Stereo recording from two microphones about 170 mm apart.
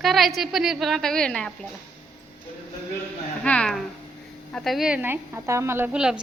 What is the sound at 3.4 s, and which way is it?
Speech, 5° left (ahead or behind).